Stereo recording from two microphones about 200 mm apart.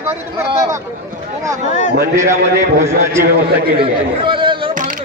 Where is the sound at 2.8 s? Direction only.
15° right (ahead or behind).